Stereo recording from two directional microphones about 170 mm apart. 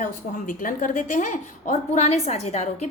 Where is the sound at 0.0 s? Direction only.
50° left (ahead or behind).